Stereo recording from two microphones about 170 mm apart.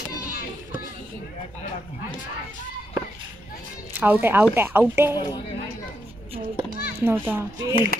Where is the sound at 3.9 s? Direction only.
10° right (ahead or behind).